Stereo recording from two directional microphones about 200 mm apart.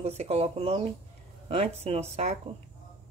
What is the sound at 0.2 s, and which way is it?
Speech, 30° right (ahead or behind).